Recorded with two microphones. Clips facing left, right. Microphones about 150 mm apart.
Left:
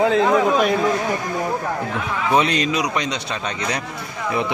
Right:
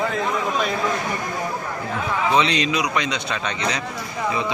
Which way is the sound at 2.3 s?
50° left (ahead or behind).